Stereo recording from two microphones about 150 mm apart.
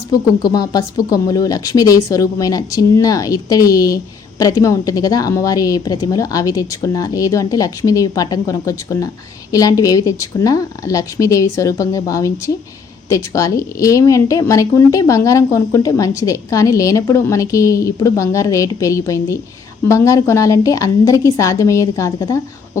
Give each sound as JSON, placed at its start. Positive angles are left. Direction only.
{"t": 0.1, "sound": "speech", "side_deg": 25}